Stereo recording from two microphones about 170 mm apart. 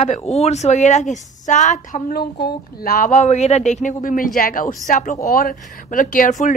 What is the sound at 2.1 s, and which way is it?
A woman's voice, 65° left (ahead or behind).